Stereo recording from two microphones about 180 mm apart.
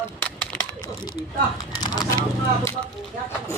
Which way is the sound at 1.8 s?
25° left (ahead or behind).